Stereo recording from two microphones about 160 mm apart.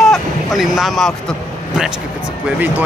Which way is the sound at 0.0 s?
Centre (ahead or behind).